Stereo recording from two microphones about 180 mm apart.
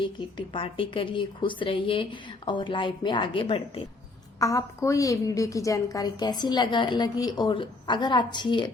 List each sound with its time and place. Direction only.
0.0 s a woman's voice: 25° left (ahead or behind)
4.4 s a woman's voice: 20° left (ahead or behind)